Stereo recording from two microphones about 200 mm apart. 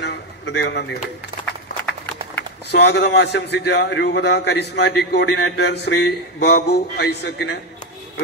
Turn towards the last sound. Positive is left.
turn(degrees=55)  # may be behind; listen again after turning